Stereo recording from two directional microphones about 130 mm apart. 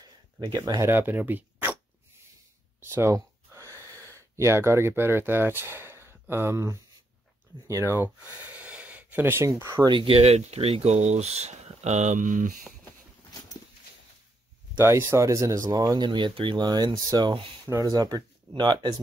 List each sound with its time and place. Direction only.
0.0 s speech: 35° right (ahead or behind); by 1.8 s 15° right (ahead or behind)
2.8 s a sound: 20° right (ahead or behind)
4.4 s speech: 20° right (ahead or behind)
9.8 s speech: 40° right (ahead or behind); by 12.5 s 85° right
14.8 s speech: 20° right (ahead or behind); by 18.9 s 35° right (ahead or behind)